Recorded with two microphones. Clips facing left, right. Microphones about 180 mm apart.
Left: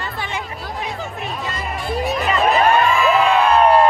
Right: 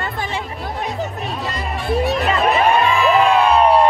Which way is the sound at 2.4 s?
Centre (ahead or behind).